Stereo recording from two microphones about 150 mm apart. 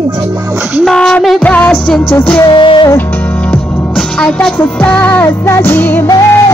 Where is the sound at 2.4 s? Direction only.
30° left (ahead or behind).